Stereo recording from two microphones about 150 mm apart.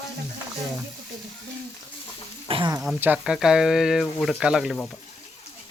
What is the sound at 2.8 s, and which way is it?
Speech, 10° right (ahead or behind).